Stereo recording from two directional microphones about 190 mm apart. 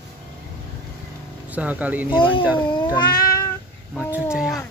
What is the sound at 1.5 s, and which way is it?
Speech, 10° right (ahead or behind).